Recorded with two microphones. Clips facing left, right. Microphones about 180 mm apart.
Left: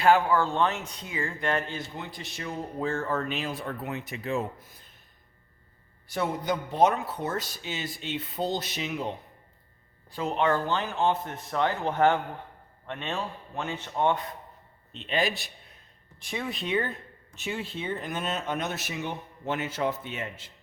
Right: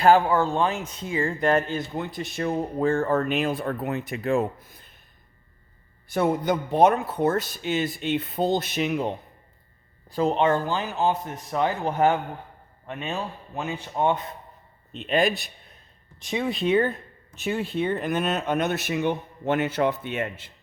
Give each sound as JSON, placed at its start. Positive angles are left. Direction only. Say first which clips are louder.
{"t": 0.0, "sound": "speech", "louder": "right 4 dB", "side_deg": -35}
{"t": 0.3, "sound": "speech", "louder": "right 2 dB", "side_deg": -20}
{"t": 0.9, "sound": "speech", "louder": "right 7 dB", "side_deg": -25}
{"t": 6.1, "sound": "speech", "louder": "right 6 dB", "side_deg": -55}
{"t": 10.1, "sound": "speech", "louder": "right 8 dB", "side_deg": -40}
{"t": 10.3, "sound": "a man's voice", "louder": "right 2 dB", "side_deg": -20}
{"t": 10.7, "sound": "speech", "louder": "right 2 dB", "side_deg": -10}
{"t": 13.9, "sound": "a man's voice", "louder": "right 2 dB", "side_deg": -20}
{"t": 15.0, "sound": "speech", "louder": "right 6 dB", "side_deg": -50}
{"t": 16.2, "sound": "a man's voice", "louder": "right 7 dB", "side_deg": -20}
{"t": 17.3, "sound": "speech", "louder": "right 7 dB", "side_deg": -45}